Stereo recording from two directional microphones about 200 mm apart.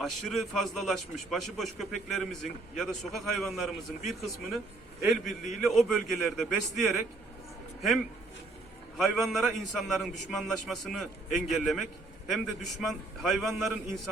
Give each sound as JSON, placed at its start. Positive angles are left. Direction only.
{"t": 0.0, "sound": "a man's voice", "side_deg": 0}
{"t": 5.4, "sound": "a man's voice", "side_deg": 40}
{"t": 5.6, "sound": "a man's voice", "side_deg": 0}